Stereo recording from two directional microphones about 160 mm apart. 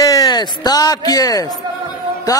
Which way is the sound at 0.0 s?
20° left (ahead or behind).